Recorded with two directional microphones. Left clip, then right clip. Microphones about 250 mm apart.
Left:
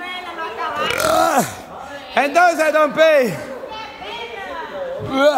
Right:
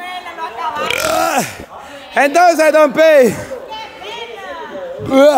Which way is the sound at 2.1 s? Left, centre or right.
Centre.